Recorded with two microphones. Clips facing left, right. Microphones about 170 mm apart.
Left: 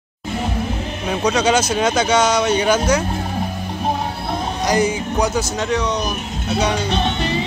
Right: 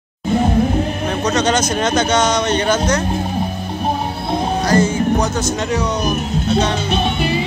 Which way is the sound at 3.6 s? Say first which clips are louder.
Right 1 dB; 10° right (ahead or behind).